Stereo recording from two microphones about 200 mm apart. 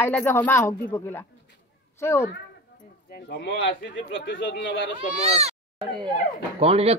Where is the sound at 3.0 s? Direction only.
55° left (ahead or behind).